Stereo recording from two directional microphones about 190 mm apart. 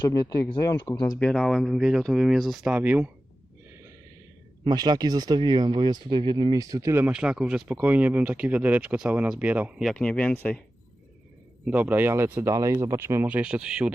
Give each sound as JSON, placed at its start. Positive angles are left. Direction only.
{"t": 0.0, "sound": "speech", "side_deg": 20}
{"t": 1.2, "sound": "speech", "side_deg": 0}
{"t": 4.6, "sound": "speech", "side_deg": -20}
{"t": 11.6, "sound": "speech", "side_deg": -10}